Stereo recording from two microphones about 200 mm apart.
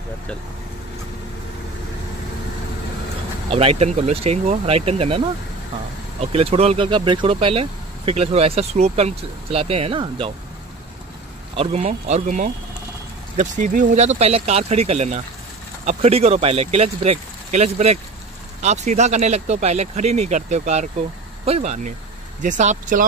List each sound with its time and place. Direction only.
3.5 s speech: 30° right (ahead or behind)
6.3 s speech: 30° right (ahead or behind)
11.5 s speech: 30° right (ahead or behind)